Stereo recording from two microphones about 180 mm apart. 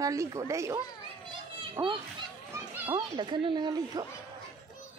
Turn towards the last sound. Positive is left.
turn(degrees=-20)  # may be behind; listen again after turning